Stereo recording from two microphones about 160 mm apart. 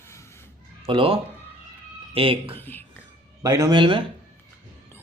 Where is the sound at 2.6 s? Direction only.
10° left (ahead or behind).